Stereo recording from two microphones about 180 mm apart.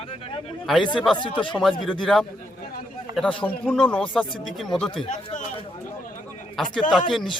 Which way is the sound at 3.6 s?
5° left (ahead or behind).